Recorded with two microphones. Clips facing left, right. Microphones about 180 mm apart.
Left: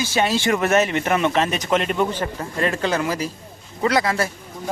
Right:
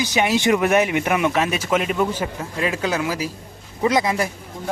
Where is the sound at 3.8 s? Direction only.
20° right (ahead or behind).